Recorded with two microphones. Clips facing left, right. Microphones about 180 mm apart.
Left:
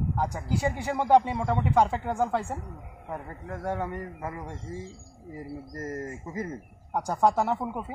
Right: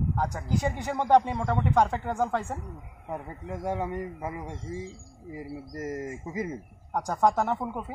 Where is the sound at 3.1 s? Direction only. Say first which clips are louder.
Right 1 dB; 10° right (ahead or behind).